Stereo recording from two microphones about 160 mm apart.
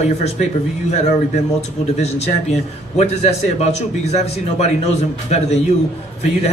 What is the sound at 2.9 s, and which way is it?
A man's voice, 45° left (ahead or behind).